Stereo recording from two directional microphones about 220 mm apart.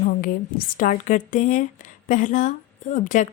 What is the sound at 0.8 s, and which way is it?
Speech, 35° left (ahead or behind).